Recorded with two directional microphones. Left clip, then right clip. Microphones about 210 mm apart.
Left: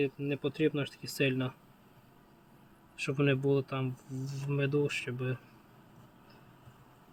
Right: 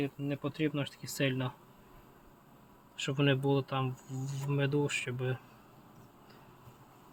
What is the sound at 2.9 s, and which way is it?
Speech, 15° right (ahead or behind).